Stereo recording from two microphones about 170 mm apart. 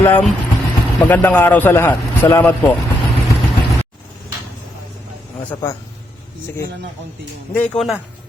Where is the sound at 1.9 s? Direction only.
25° left (ahead or behind).